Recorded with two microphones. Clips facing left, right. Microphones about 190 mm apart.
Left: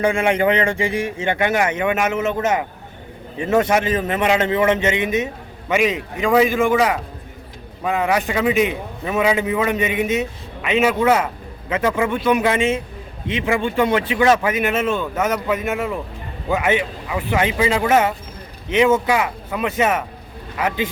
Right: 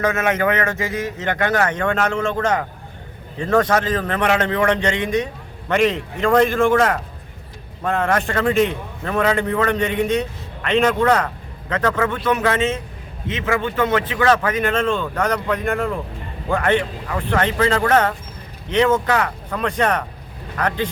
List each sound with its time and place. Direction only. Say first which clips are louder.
0.0 s a man's voice: left 2 dB; 25° left (ahead or behind)
0.3 s speech: left 2 dB; 15° left (ahead or behind)
0.6 s a man's voice: left 2 dB; 30° left (ahead or behind); by 3.6 s 10° left (ahead or behind)
3.6 s a man's voice: left 2 dB; 20° left (ahead or behind)
4.9 s a man's voice: left 1 dB; 5° left (ahead or behind)